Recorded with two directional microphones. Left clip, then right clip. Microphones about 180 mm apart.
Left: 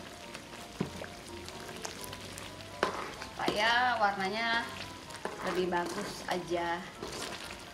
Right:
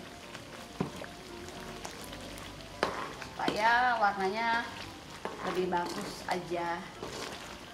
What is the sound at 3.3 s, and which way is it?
Speech, 15° left (ahead or behind).